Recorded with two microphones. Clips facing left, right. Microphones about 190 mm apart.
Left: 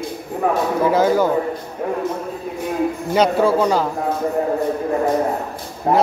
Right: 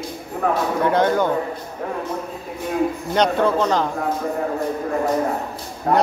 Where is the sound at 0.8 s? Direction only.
5° left (ahead or behind).